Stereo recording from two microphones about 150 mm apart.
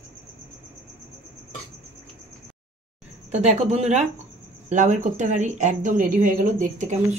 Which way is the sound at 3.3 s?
45° right (ahead or behind).